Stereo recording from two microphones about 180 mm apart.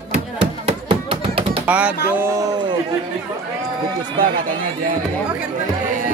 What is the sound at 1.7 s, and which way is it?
Speech, 5° right (ahead or behind).